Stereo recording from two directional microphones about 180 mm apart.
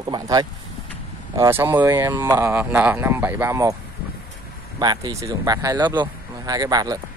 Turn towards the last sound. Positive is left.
turn(degrees=-20)  # may be behind; listen again after turning